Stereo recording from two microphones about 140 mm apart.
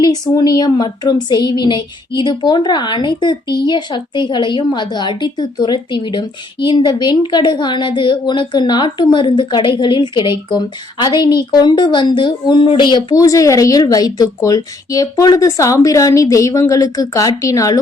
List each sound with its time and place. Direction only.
0.0 s a woman's voice: 30° left (ahead or behind)